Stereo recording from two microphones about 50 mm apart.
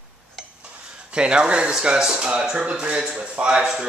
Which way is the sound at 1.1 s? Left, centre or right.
Centre.